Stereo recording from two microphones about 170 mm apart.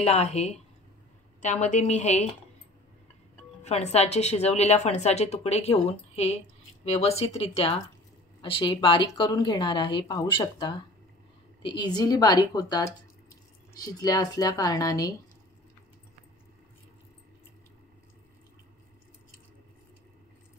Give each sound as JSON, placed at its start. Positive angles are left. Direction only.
{"t": 0.0, "sound": "a woman's voice", "side_deg": 40}
{"t": 3.6, "sound": "a woman's voice", "side_deg": 40}